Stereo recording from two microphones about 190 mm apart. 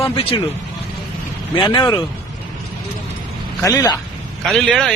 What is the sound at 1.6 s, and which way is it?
Speech, 25° left (ahead or behind).